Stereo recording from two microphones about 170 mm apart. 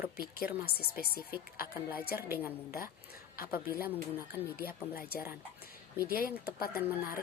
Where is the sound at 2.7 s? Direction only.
65° left (ahead or behind).